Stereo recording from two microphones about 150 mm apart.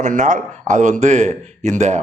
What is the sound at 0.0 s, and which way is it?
Speech, 55° right (ahead or behind).